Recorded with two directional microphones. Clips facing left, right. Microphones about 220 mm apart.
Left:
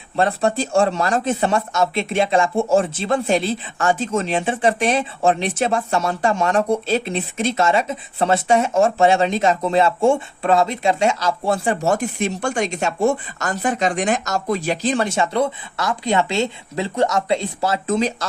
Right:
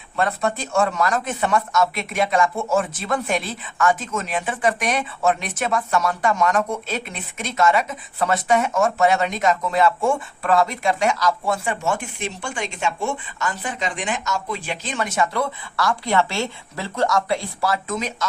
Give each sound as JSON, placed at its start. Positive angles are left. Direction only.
{"t": 0.2, "sound": "speech", "side_deg": 30}